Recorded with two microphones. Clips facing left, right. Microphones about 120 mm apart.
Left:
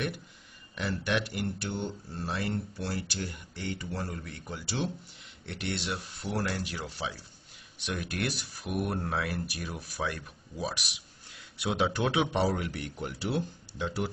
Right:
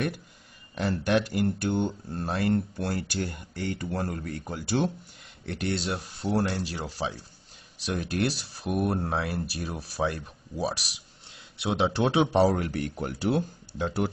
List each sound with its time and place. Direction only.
0.7 s speech: 40° right (ahead or behind)